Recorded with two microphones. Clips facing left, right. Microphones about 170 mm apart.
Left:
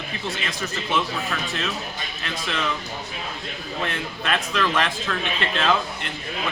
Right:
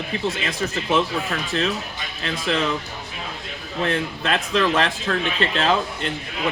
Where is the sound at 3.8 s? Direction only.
30° right (ahead or behind).